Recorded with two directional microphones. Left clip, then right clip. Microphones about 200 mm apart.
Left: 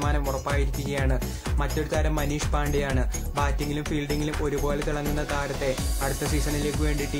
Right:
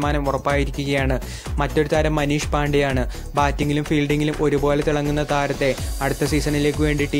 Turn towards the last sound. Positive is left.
turn(degrees=-35)  # may be behind; listen again after turning